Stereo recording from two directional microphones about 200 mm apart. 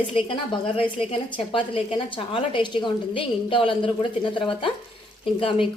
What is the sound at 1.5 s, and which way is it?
A woman's voice, 25° left (ahead or behind).